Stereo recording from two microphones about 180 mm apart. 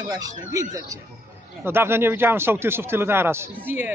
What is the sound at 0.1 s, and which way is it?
Speech, 20° right (ahead or behind).